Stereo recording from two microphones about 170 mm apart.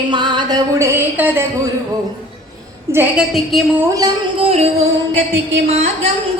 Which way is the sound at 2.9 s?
10° right (ahead or behind).